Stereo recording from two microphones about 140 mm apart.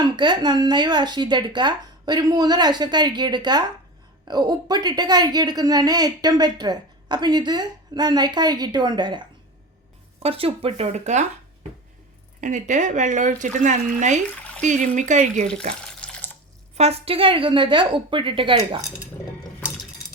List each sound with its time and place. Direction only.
0.0 s speech: 35° right (ahead or behind)
10.2 s speech: 40° right (ahead or behind)
12.4 s speech: 60° right (ahead or behind)
16.0 s water: 5° left (ahead or behind)
16.7 s speech: 50° right (ahead or behind)